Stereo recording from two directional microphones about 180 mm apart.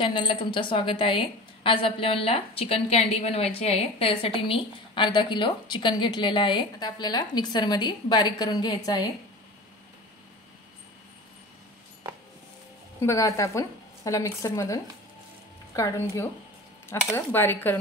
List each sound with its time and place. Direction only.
0.1 s a woman's voice: 25° left (ahead or behind)
13.0 s speech: 15° left (ahead or behind)